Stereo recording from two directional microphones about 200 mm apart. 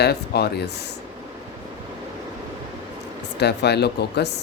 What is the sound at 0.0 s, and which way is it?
Speech, 55° left (ahead or behind).